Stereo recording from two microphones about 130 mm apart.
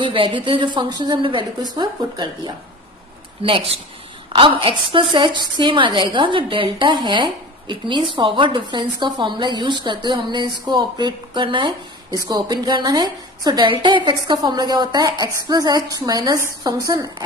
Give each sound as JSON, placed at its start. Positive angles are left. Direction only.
{"t": 0.0, "sound": "a woman's voice", "side_deg": -40}